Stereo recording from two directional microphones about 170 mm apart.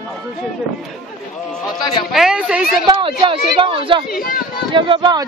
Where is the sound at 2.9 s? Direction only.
30° right (ahead or behind).